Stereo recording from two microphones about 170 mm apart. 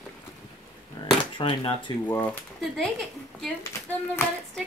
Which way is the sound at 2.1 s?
10° left (ahead or behind).